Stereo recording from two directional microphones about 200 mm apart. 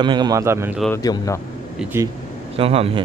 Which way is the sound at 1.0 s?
20° left (ahead or behind).